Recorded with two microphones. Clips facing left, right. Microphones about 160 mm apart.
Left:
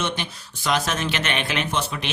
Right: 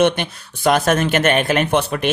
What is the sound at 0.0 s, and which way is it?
Speech, 55° right (ahead or behind).